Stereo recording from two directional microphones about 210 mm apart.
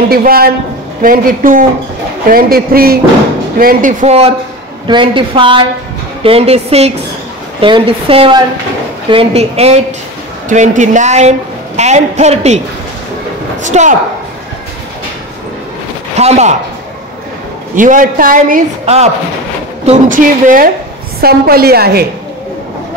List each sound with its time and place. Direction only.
0.1 s a woman's voice: 45° right (ahead or behind)
16.2 s a woman's voice: 30° right (ahead or behind)
17.7 s a woman's voice: 40° right (ahead or behind)